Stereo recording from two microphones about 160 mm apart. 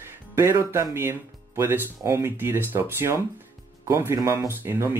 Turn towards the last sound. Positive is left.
turn(degrees=-15)  # may be behind; listen again after turning